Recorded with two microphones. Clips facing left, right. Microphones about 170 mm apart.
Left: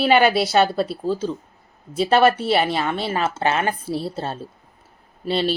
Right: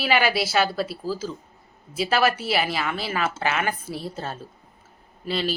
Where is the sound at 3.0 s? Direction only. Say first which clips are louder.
Left 4 dB; 30° left (ahead or behind).